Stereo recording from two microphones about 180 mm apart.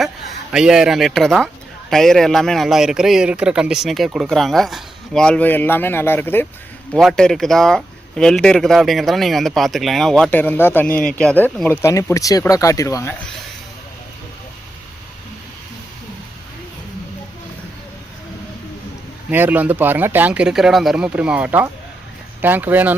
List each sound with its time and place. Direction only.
0.0 s a man's voice: centre (ahead or behind); by 13.1 s 15° left (ahead or behind)
19.3 s speech: 10° right (ahead or behind)